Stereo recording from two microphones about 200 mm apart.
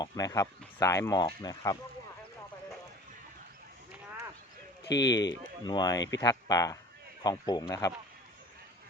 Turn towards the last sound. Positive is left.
turn(degrees=15)  # may be behind; listen again after turning